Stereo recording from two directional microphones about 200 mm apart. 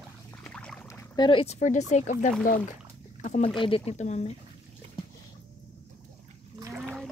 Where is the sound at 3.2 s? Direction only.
35° left (ahead or behind).